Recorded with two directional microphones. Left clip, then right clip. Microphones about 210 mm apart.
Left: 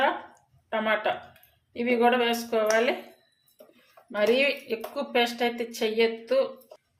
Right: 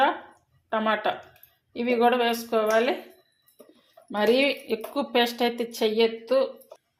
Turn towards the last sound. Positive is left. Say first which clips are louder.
# right 1 dB
turn(degrees=-20)  # may be behind; listen again after turning